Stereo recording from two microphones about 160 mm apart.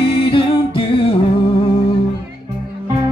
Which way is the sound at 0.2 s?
35° left (ahead or behind).